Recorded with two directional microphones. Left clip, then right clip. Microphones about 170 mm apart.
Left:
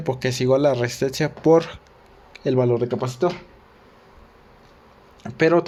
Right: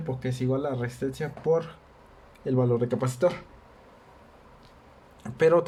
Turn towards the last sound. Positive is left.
turn(degrees=15)  # may be behind; listen again after turning